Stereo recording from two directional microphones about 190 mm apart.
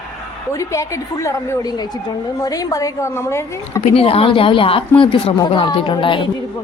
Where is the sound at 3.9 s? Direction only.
30° left (ahead or behind).